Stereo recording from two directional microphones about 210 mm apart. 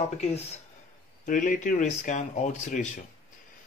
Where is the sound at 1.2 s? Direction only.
40° left (ahead or behind).